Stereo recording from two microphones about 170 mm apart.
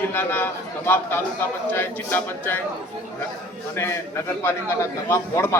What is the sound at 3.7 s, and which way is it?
A man's voice, 15° left (ahead or behind).